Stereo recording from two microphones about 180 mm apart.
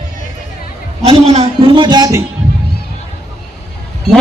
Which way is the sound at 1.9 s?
20° right (ahead or behind).